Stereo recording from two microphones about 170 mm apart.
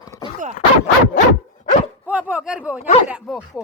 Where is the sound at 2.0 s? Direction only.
5° right (ahead or behind).